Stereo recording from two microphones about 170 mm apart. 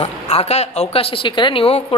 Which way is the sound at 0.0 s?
40° left (ahead or behind).